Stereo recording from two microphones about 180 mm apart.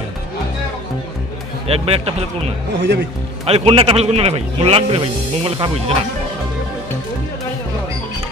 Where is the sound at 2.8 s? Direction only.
65° right (ahead or behind).